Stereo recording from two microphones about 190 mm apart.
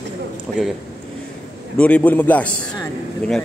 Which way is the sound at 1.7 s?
5° left (ahead or behind).